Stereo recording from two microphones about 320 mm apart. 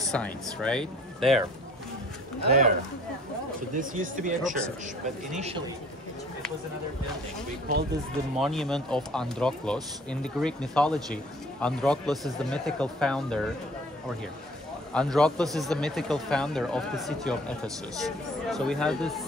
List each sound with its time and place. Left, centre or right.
0.1 s speech: centre
3.7 s speech: right
8.4 s speech: centre
15.0 s speech: centre